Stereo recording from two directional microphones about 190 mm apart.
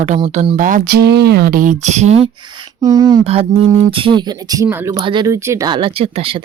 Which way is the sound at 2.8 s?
20° right (ahead or behind).